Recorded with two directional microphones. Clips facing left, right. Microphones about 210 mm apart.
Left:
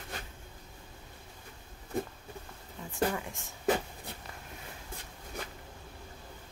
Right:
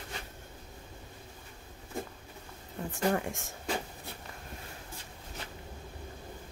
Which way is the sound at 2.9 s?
60° right (ahead or behind).